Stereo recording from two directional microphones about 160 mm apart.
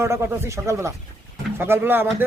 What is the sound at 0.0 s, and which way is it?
Speech, 15° right (ahead or behind).